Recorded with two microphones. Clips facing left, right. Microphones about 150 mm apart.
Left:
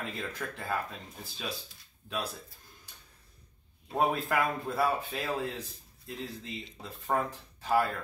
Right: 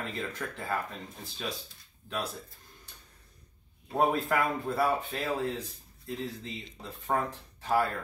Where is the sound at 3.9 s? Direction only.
Centre (ahead or behind).